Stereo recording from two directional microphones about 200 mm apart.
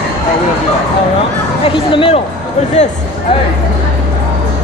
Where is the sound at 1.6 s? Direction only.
25° left (ahead or behind).